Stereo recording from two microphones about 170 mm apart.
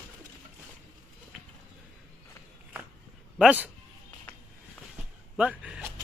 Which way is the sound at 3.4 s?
10° right (ahead or behind).